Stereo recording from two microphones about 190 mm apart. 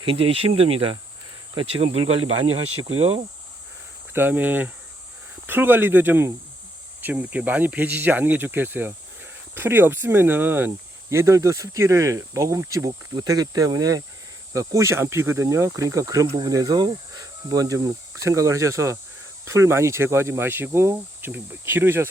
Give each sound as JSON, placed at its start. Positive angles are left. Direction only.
{"t": 0.0, "sound": "speech", "side_deg": -30}
{"t": 4.1, "sound": "speech", "side_deg": -10}